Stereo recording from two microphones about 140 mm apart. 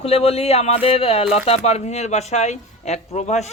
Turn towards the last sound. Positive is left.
turn(degrees=55)  # may be behind; listen again after turning